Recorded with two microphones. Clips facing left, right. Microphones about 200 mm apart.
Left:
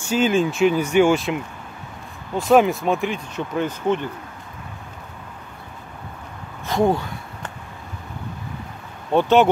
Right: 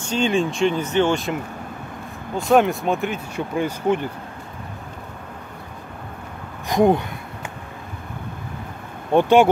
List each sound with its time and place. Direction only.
0.0 s speech: 5° left (ahead or behind); by 4.0 s 10° right (ahead or behind)
6.7 s a sound: 20° right (ahead or behind)
9.1 s speech: 15° right (ahead or behind)